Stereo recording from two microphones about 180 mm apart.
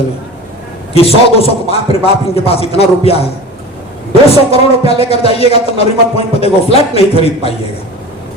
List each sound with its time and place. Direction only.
0.9 s speech: 35° left (ahead or behind)
4.5 s speech: 35° left (ahead or behind)